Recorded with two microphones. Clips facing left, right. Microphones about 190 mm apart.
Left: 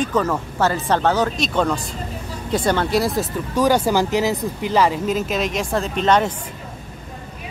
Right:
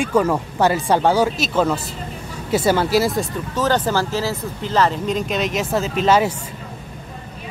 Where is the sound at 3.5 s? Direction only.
10° left (ahead or behind); by 6.3 s 5° right (ahead or behind).